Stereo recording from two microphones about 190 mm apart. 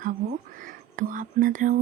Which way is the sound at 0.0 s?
45° right (ahead or behind).